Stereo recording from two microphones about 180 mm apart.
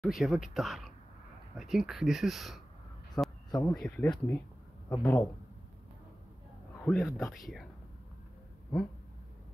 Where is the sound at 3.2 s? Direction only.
20° left (ahead or behind).